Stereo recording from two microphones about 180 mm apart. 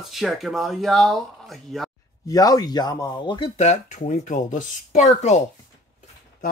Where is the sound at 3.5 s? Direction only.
40° left (ahead or behind).